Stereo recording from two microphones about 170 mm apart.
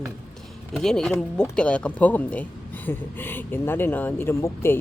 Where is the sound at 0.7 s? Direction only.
5° left (ahead or behind).